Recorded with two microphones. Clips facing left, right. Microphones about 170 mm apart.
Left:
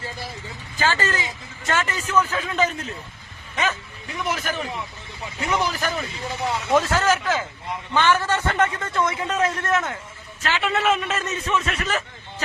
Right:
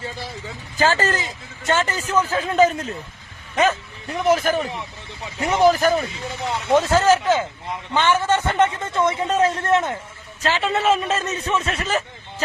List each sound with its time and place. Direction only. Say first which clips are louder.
0.8 s speech: right 4 dB; 40° right (ahead or behind)
6.7 s a man's voice: right 4 dB; 25° right (ahead or behind)